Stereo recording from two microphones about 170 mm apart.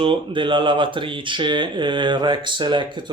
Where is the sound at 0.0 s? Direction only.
30° right (ahead or behind).